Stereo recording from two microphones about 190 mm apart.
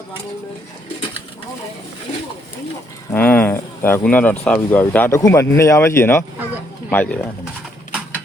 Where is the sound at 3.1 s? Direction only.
10° left (ahead or behind).